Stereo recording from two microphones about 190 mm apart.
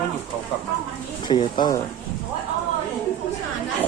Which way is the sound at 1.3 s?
25° left (ahead or behind).